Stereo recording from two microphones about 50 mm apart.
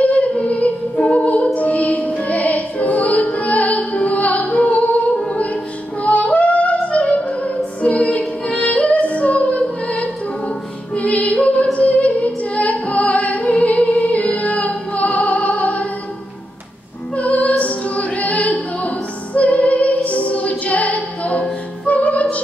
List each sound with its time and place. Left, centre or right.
0.0 s music: left
6.0 s yodeling: left
11.0 s music: left
17.1 s music: left